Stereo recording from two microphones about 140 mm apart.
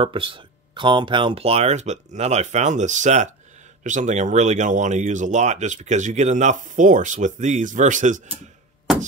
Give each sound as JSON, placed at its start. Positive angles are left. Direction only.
{"t": 0.0, "sound": "speech", "side_deg": -40}